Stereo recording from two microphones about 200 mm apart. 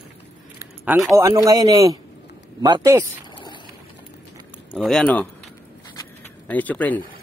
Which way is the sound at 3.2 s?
25° left (ahead or behind).